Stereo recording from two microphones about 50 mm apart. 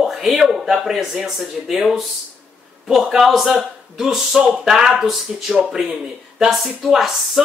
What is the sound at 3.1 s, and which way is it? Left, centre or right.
Speech, centre.